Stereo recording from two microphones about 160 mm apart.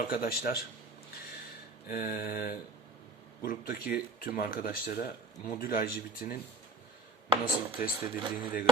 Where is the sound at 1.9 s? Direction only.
65° left (ahead or behind).